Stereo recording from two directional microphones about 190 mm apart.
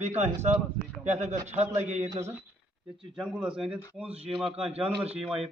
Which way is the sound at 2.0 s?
15° right (ahead or behind).